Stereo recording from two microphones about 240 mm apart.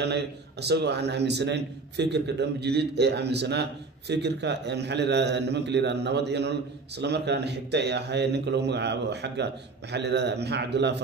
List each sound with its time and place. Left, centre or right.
0.0 s a man's voice: right